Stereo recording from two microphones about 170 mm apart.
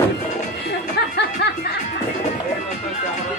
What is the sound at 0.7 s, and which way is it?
Music, 75° left (ahead or behind).